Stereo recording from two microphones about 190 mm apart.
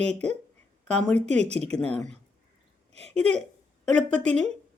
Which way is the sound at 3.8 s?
5° left (ahead or behind).